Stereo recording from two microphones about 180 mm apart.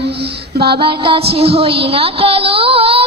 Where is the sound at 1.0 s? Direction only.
30° right (ahead or behind).